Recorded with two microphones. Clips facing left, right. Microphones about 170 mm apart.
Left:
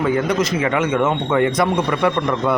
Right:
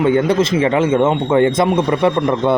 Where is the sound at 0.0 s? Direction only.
25° right (ahead or behind).